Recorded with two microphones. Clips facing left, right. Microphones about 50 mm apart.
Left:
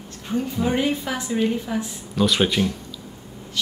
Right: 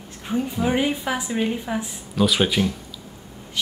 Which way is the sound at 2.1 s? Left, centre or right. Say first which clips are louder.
Even; centre.